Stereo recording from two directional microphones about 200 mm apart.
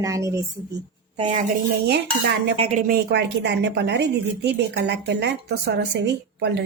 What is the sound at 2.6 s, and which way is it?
A woman's voice, 35° right (ahead or behind).